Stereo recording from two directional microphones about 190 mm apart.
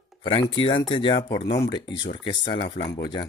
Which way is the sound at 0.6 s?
25° left (ahead or behind).